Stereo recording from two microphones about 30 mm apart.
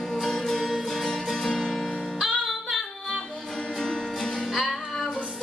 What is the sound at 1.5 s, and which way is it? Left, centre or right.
Music, centre.